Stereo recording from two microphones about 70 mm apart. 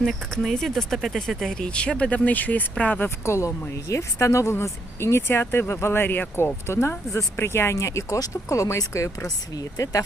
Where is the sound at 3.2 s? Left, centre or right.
Left.